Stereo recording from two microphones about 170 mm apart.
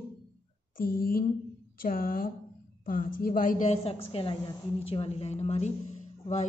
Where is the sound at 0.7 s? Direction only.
60° left (ahead or behind).